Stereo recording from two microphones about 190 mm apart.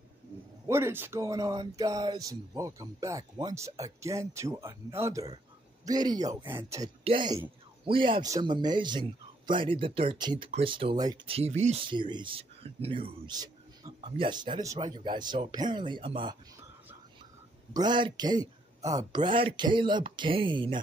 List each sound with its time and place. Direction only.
0.7 s speech: 15° right (ahead or behind)
7.1 s speech: 25° right (ahead or behind)
17.7 s speech: 25° right (ahead or behind)